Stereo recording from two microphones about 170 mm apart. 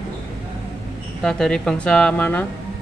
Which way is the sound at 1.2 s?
5° left (ahead or behind).